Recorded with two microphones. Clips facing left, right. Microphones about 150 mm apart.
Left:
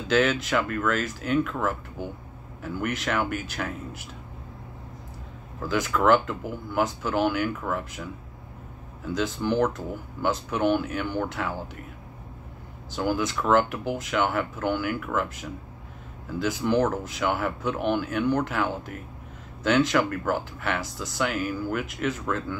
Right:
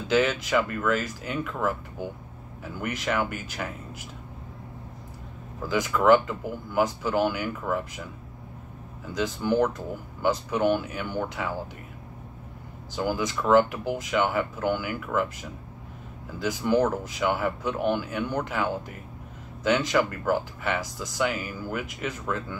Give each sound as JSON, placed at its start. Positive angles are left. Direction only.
{"t": 0.1, "sound": "speech", "side_deg": -5}
{"t": 3.3, "sound": "speech", "side_deg": 60}
{"t": 5.7, "sound": "speech", "side_deg": -5}
{"t": 9.1, "sound": "speech", "side_deg": -5}
{"t": 12.9, "sound": "speech", "side_deg": -5}
{"t": 16.3, "sound": "speech", "side_deg": -5}